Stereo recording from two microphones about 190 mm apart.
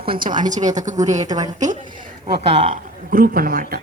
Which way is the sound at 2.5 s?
40° right (ahead or behind).